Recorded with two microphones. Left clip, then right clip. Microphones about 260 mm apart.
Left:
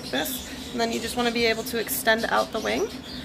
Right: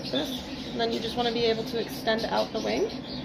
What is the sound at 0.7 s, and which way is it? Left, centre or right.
Speech, left.